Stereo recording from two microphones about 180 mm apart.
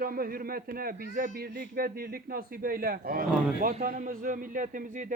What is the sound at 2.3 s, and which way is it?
A man's voice, 55° right (ahead or behind).